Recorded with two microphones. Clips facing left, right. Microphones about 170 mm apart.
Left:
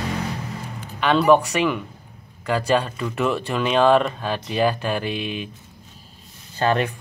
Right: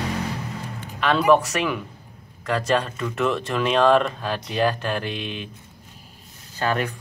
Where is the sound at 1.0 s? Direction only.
Centre (ahead or behind).